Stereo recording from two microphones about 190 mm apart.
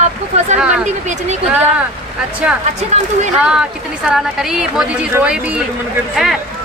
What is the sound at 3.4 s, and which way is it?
Speech, 5° right (ahead or behind).